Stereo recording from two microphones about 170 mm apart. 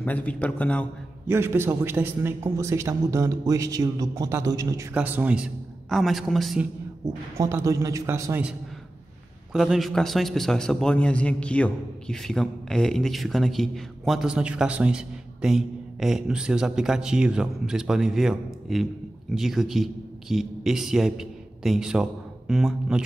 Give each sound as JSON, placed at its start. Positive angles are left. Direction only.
{"t": 0.0, "sound": "a man's voice", "side_deg": 10}
{"t": 1.2, "sound": "a man's voice", "side_deg": -15}
{"t": 7.3, "sound": "a man's voice", "side_deg": -15}
{"t": 9.5, "sound": "a man's voice", "side_deg": 0}